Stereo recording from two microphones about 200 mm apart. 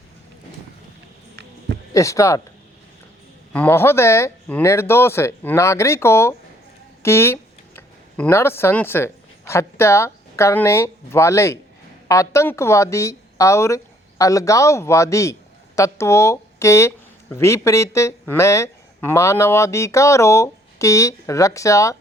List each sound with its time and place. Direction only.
1.9 s speech: 15° left (ahead or behind)
3.5 s a woman's voice: 10° left (ahead or behind)